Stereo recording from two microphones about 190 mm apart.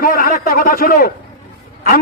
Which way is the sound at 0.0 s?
50° left (ahead or behind).